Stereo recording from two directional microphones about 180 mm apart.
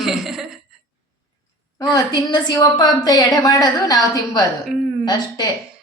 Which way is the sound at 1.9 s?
25° left (ahead or behind).